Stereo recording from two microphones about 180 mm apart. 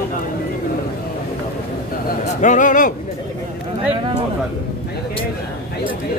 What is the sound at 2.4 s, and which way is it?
Speech, 45° left (ahead or behind).